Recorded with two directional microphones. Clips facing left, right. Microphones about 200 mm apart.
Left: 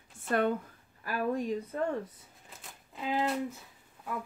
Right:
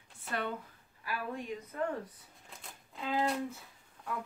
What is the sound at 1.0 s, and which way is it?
Speech, 45° left (ahead or behind).